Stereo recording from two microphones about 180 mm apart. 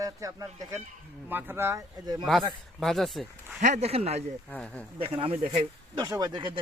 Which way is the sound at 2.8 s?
Centre (ahead or behind).